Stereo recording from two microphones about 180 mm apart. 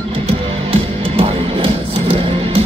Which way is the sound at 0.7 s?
30° right (ahead or behind).